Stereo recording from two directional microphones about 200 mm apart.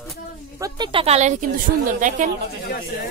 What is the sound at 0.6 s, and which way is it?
Speech, 25° right (ahead or behind).